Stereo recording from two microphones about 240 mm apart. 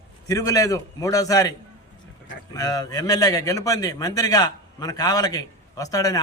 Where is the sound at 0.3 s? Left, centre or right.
Centre.